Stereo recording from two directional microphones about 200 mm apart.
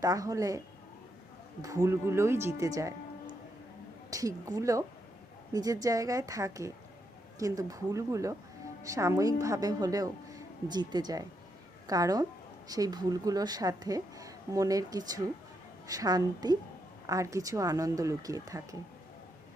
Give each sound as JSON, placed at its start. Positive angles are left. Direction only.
{"t": 0.0, "sound": "speech", "side_deg": -15}
{"t": 1.6, "sound": "speech", "side_deg": -15}
{"t": 2.6, "sound": "music", "side_deg": -15}
{"t": 4.1, "sound": "a woman's voice", "side_deg": -15}